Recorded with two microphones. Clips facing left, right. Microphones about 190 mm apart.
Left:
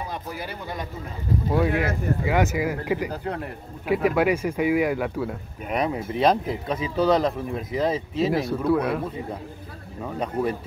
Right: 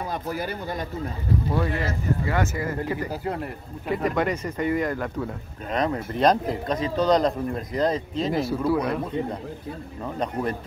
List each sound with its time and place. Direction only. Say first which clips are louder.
0.3 s speech: right 4 dB; 45° right (ahead or behind)
1.5 s speech: left 7 dB; 15° left (ahead or behind)
3.1 s speech: right 1 dB; centre (ahead or behind)